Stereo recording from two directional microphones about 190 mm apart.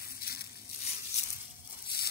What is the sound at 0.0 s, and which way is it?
Crushing, 55° left (ahead or behind).